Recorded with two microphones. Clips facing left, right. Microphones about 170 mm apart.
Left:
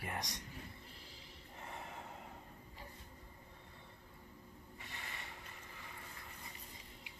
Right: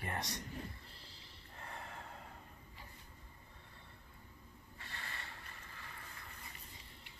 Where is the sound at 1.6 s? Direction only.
20° left (ahead or behind).